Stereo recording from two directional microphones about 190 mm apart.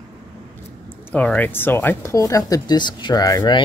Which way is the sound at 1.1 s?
5° left (ahead or behind).